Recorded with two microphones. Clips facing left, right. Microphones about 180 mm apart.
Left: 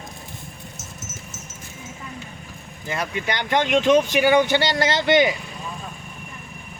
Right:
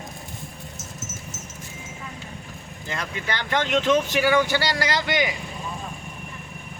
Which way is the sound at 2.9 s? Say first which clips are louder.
Left 4 dB; 15° left (ahead or behind).